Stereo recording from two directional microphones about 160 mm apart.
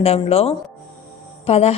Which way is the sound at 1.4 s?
40° left (ahead or behind).